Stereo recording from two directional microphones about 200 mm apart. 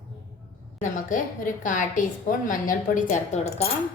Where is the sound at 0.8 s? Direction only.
40° left (ahead or behind).